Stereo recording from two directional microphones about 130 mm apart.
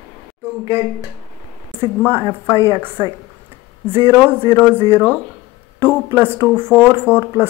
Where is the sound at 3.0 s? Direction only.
25° right (ahead or behind).